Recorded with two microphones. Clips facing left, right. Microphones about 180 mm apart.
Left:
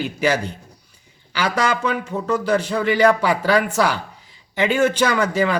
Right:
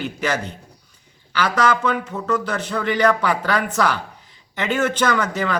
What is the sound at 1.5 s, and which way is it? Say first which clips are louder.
A man's voice: right 2 dB; 10° left (ahead or behind).